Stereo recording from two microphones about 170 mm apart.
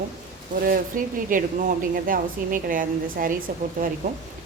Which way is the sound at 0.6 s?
55° right (ahead or behind).